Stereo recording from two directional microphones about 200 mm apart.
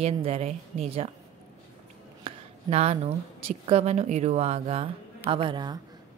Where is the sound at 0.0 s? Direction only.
30° right (ahead or behind).